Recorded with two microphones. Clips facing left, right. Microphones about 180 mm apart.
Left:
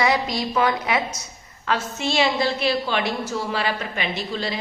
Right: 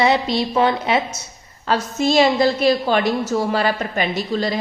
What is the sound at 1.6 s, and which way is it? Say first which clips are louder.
A woman's voice: right 6 dB; 40° right (ahead or behind).